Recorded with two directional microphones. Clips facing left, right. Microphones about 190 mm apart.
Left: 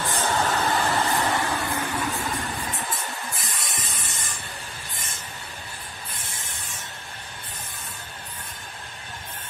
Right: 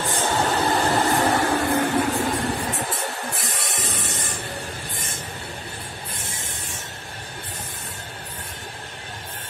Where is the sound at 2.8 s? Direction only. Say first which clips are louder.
Right 4 dB; 60° right (ahead or behind).